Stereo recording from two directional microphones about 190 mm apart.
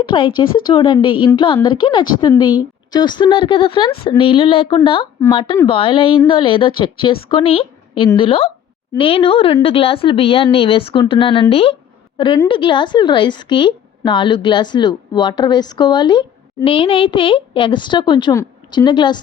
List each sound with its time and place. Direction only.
0.0 s a woman's voice: 25° left (ahead or behind)